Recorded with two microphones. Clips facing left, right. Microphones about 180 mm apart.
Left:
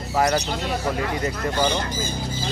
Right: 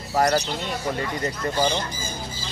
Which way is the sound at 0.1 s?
5° left (ahead or behind).